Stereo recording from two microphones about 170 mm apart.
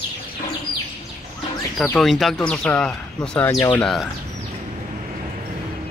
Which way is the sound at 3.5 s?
20° left (ahead or behind).